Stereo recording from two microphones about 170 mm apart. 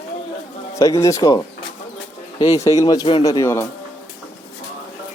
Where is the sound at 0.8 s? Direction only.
20° left (ahead or behind).